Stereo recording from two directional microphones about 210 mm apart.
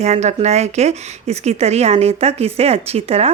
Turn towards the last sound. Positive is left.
turn(degrees=-30)  # may be behind; listen again after turning